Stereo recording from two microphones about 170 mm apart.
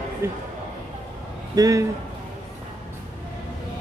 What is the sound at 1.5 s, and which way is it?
Speech, 20° right (ahead or behind).